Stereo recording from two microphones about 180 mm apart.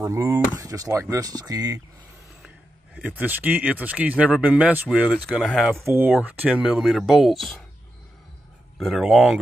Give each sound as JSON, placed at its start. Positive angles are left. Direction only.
{"t": 0.0, "sound": "speech", "side_deg": -15}
{"t": 2.4, "sound": "speech", "side_deg": -10}
{"t": 5.9, "sound": "speech", "side_deg": -10}
{"t": 8.7, "sound": "speech", "side_deg": 0}